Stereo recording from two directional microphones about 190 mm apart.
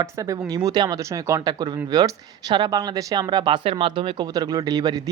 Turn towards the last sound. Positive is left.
turn(degrees=-20)  # may be behind; listen again after turning